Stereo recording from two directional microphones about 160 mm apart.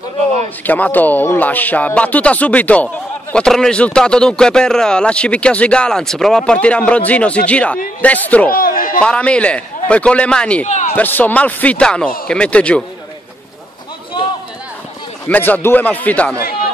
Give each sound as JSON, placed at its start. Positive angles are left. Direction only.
{"t": 0.7, "sound": "speech", "side_deg": 10}
{"t": 8.5, "sound": "a sound", "side_deg": 65}
{"t": 9.0, "sound": "speech", "side_deg": 5}
{"t": 10.7, "sound": "speech", "side_deg": 50}
{"t": 11.0, "sound": "speech", "side_deg": 10}
{"t": 15.2, "sound": "speech", "side_deg": 10}